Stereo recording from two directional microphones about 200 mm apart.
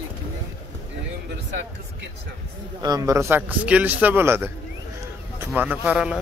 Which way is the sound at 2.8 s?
15° right (ahead or behind).